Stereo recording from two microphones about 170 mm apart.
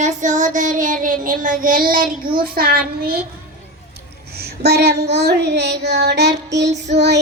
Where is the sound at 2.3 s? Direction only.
60° right (ahead or behind).